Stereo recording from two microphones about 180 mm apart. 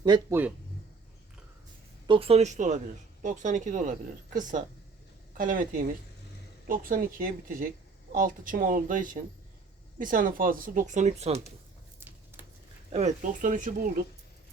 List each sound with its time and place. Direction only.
0.0 s speech: 25° right (ahead or behind)
2.0 s speech: 30° right (ahead or behind); by 7.1 s 50° right (ahead or behind)
8.1 s speech: 50° right (ahead or behind)
11.9 s a sound: 10° right (ahead or behind)
12.9 s speech: 40° right (ahead or behind)